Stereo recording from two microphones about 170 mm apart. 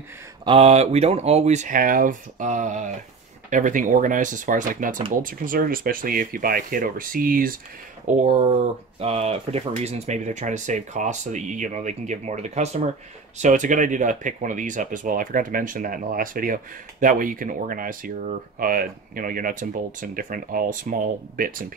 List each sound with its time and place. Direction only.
0.5 s speech: 40° right (ahead or behind); by 7.5 s 55° right (ahead or behind)
8.2 s speech: 35° right (ahead or behind); by 21.6 s 55° right (ahead or behind)